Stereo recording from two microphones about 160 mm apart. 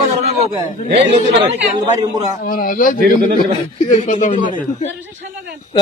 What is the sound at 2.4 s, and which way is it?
Speech, 60° left (ahead or behind).